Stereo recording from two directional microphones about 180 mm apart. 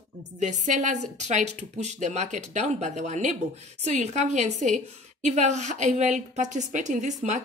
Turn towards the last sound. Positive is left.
turn(degrees=-40)  # may be behind; listen again after turning